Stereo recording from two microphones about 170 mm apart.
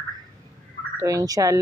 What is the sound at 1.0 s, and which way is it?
Speech, 20° right (ahead or behind).